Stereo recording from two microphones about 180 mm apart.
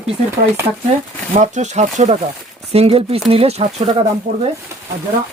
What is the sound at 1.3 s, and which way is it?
Speech, 40° right (ahead or behind).